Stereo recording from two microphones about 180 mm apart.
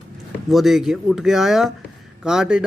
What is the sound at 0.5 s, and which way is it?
Speech, centre (ahead or behind).